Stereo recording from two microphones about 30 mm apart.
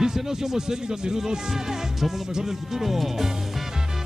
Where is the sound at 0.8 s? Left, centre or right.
Right.